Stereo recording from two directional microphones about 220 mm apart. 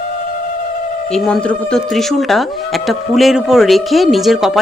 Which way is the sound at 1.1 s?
Centre (ahead or behind).